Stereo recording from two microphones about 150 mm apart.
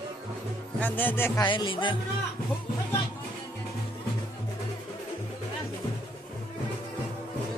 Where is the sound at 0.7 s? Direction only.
10° left (ahead or behind).